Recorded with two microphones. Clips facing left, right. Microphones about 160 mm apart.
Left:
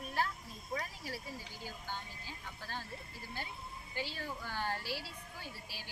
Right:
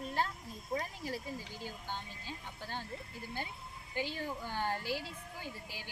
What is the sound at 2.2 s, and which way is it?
Speech, 20° right (ahead or behind).